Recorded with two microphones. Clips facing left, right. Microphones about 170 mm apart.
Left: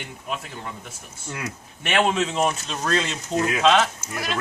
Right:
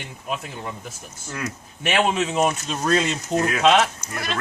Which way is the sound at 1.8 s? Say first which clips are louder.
Even; 5° right (ahead or behind).